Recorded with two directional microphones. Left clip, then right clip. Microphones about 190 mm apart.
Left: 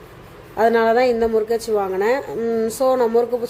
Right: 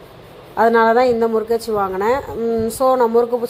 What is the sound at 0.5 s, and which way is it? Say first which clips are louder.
Speech: right 3 dB; 5° left (ahead or behind).